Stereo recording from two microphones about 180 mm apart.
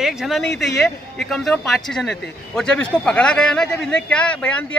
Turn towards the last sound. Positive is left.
turn(degrees=5)  # may be behind; listen again after turning